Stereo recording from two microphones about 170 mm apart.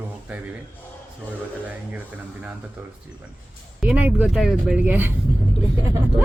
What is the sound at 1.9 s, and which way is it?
Speech, 10° right (ahead or behind).